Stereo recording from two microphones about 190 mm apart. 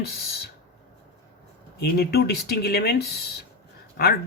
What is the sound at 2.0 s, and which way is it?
Speech, 55° left (ahead or behind).